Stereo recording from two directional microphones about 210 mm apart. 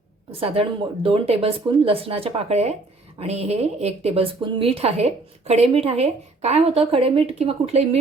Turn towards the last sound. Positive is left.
turn(degrees=-30)  # may be behind; listen again after turning